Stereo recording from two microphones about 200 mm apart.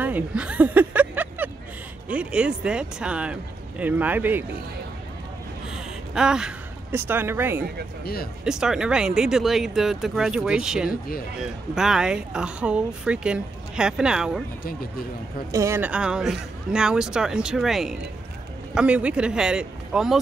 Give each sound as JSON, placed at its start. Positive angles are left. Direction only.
{"t": 0.0, "sound": "a sound", "side_deg": -5}
{"t": 2.0, "sound": "speech", "side_deg": -5}
{"t": 5.7, "sound": "a woman's voice", "side_deg": -5}
{"t": 8.0, "sound": "speech", "side_deg": 50}
{"t": 8.5, "sound": "speech", "side_deg": -5}
{"t": 15.5, "sound": "speech", "side_deg": -15}